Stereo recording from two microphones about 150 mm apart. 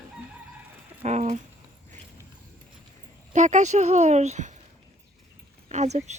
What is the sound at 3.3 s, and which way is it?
A woman's voice, 55° right (ahead or behind).